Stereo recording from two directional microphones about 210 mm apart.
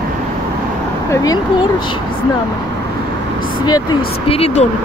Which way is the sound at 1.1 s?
15° left (ahead or behind).